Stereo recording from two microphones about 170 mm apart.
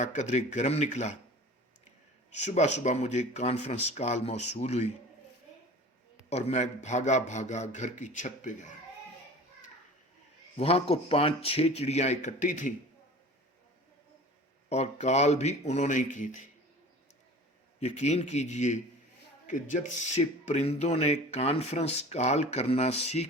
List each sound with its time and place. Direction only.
0.0 s speech: 45° left (ahead or behind)
2.3 s speech: 45° left (ahead or behind)
6.3 s speech: 40° left (ahead or behind)
10.6 s speech: 35° left (ahead or behind)
14.7 s speech: 40° left (ahead or behind)
17.7 s speech: 40° left (ahead or behind)